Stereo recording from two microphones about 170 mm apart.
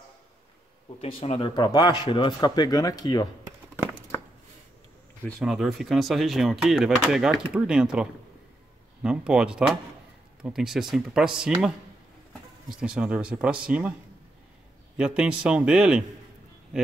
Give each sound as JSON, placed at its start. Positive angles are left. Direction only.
{"t": 0.8, "sound": "speech", "side_deg": 35}
{"t": 1.5, "sound": "speech", "side_deg": 25}
{"t": 5.4, "sound": "speech", "side_deg": 0}
{"t": 15.0, "sound": "speech", "side_deg": -5}